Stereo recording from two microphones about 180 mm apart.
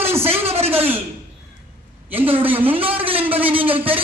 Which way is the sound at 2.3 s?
10° right (ahead or behind).